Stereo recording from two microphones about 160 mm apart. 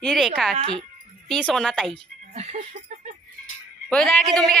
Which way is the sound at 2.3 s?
40° right (ahead or behind).